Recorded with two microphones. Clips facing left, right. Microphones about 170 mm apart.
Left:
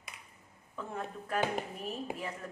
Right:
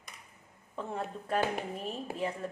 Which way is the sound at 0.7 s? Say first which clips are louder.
Right 3 dB; 30° right (ahead or behind).